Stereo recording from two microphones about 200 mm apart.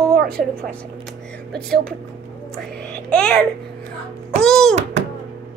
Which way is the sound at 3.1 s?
5° left (ahead or behind).